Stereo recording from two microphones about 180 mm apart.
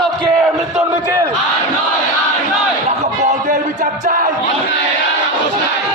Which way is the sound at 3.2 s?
45° right (ahead or behind).